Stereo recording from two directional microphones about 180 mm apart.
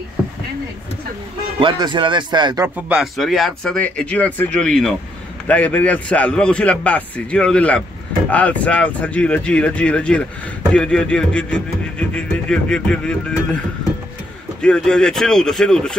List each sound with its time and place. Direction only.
1.6 s speech: 25° right (ahead or behind)
2.9 s a man's voice: centre (ahead or behind)
14.6 s speech: 5° left (ahead or behind)